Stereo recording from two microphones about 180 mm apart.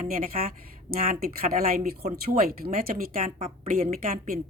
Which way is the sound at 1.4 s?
40° right (ahead or behind).